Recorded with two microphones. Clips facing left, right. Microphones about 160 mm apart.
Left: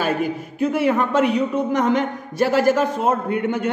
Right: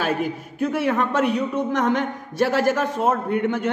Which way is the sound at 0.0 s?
5° left (ahead or behind).